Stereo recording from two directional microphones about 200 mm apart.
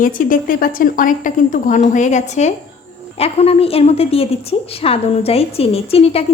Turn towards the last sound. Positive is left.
turn(degrees=30)  # may be behind; listen again after turning